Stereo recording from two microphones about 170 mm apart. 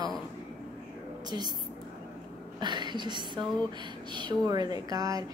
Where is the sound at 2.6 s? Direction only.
25° right (ahead or behind).